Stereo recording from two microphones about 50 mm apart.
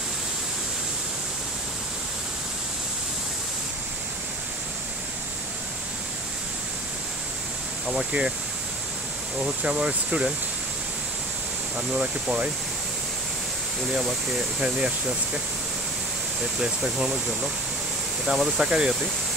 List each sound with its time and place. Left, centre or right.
7.8 s speech: centre
9.4 s speech: right
11.9 s speech: right
14.6 s speech: right
16.5 s speech: centre
18.2 s speech: centre
18.6 s speech: centre